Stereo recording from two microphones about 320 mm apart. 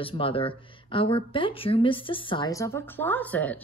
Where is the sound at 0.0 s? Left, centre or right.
Centre.